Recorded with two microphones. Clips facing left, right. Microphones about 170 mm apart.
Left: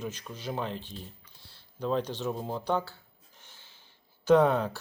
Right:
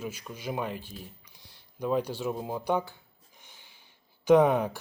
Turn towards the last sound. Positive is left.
turn(degrees=-15)  # may be behind; listen again after turning